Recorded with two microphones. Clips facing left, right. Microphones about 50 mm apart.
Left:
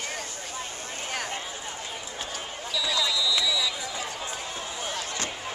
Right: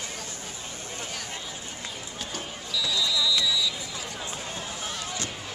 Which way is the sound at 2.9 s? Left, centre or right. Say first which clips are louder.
Even; left.